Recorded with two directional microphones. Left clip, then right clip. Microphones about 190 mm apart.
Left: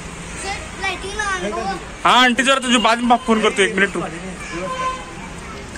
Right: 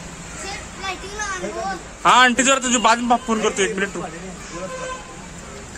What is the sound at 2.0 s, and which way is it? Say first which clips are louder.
A man's voice: even; centre (ahead or behind).